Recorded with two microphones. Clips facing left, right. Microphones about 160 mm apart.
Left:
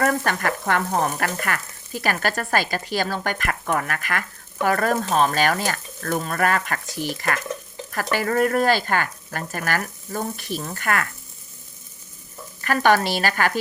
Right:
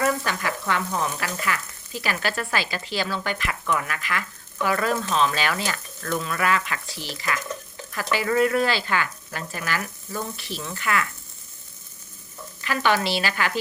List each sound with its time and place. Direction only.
0.0 s frying: 50° left (ahead or behind)
12.6 s frying: 50° left (ahead or behind)